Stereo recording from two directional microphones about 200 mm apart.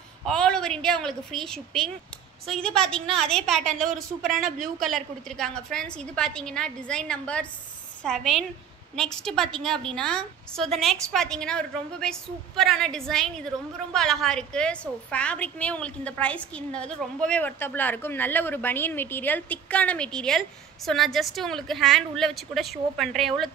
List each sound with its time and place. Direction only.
0.2 s a woman's voice: 5° left (ahead or behind)
4.3 s speech: 40° right (ahead or behind)
4.9 s a woman's voice: 5° left (ahead or behind)